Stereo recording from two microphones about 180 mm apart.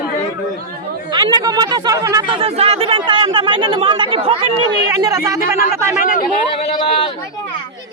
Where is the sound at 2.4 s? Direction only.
35° right (ahead or behind).